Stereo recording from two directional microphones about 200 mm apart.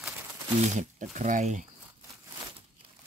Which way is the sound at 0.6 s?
35° right (ahead or behind).